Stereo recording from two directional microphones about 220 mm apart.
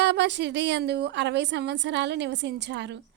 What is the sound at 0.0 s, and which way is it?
A woman's voice, 50° right (ahead or behind).